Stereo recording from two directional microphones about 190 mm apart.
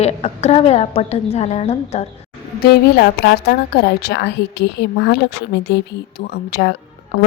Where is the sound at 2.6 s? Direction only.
55° left (ahead or behind).